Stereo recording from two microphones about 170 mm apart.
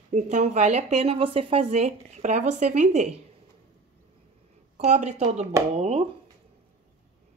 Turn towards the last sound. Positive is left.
turn(degrees=-35)  # may be behind; listen again after turning